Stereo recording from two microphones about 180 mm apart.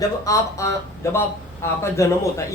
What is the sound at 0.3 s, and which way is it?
Speech, 15° left (ahead or behind).